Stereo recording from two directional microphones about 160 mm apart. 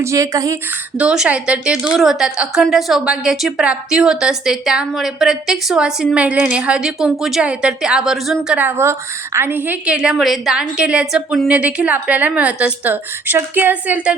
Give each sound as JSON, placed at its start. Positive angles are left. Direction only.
{"t": 0.0, "sound": "speech", "side_deg": -20}
{"t": 0.9, "sound": "a woman's voice", "side_deg": -5}